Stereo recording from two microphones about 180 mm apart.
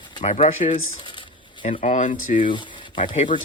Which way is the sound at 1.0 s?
25° left (ahead or behind).